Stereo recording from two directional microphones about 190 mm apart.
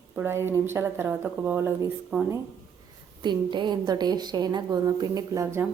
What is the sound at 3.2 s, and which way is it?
A woman's voice, 25° right (ahead or behind).